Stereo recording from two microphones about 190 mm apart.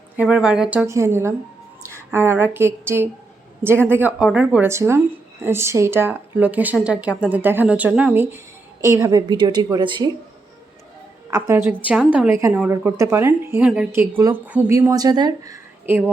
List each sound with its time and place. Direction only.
0.2 s a woman's voice: 5° right (ahead or behind)
1.8 s a sound: 15° right (ahead or behind)
2.0 s a woman's voice: 10° right (ahead or behind)
11.3 s a woman's voice: 15° right (ahead or behind)